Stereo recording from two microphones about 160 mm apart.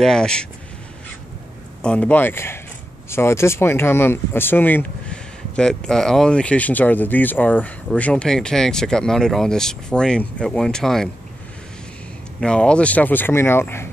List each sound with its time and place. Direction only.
0.0 s speech: 5° left (ahead or behind)
1.8 s speech: 5° left (ahead or behind)
12.4 s speech: 5° left (ahead or behind)